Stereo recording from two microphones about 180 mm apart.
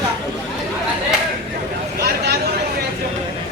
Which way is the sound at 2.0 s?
60° right (ahead or behind).